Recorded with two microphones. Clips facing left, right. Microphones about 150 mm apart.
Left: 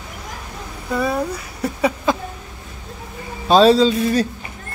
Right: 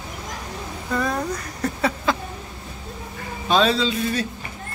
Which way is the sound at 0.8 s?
10° left (ahead or behind).